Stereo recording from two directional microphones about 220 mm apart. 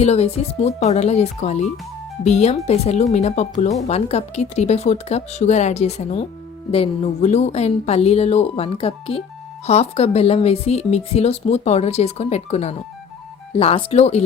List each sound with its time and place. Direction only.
0.0 s a woman's voice: 30° left (ahead or behind)